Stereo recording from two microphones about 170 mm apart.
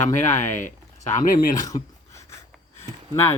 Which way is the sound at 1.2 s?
55° left (ahead or behind).